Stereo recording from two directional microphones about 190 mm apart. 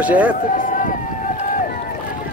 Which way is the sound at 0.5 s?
45° left (ahead or behind).